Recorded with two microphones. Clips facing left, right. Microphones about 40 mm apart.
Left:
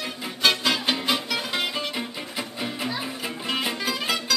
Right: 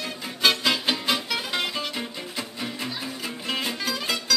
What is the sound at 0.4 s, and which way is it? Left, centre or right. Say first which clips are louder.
Music: even; centre.